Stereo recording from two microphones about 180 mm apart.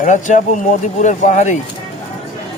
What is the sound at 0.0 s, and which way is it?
Speech, 45° left (ahead or behind).